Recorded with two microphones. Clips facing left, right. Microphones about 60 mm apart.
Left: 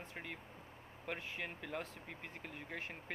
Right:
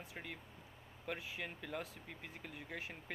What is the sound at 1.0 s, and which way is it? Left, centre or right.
Speech, centre.